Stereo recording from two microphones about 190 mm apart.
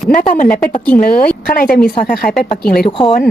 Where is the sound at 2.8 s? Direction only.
25° left (ahead or behind).